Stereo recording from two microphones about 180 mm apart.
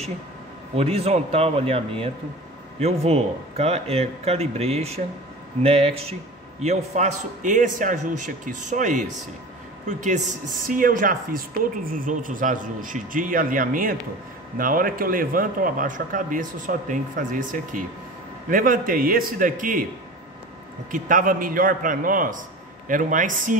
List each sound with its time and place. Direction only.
0.7 s speech: 35° right (ahead or behind)
20.9 s speech: 50° right (ahead or behind)